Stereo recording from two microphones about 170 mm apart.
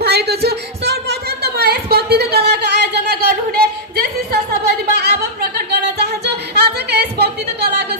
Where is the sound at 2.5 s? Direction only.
75° right (ahead or behind).